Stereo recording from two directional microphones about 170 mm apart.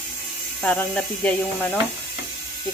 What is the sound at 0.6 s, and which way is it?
Speech, 5° left (ahead or behind).